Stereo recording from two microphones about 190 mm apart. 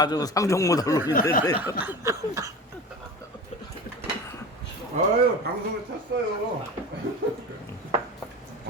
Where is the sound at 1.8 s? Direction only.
15° right (ahead or behind).